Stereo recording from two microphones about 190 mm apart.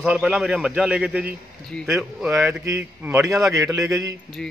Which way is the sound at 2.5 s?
10° right (ahead or behind).